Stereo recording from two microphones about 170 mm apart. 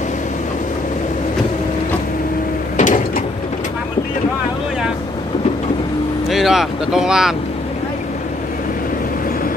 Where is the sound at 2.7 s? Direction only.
50° left (ahead or behind).